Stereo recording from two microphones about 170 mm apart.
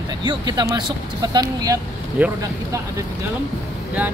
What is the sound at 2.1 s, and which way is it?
Speech, 10° right (ahead or behind).